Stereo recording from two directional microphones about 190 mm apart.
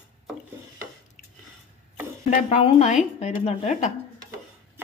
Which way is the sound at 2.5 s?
35° left (ahead or behind).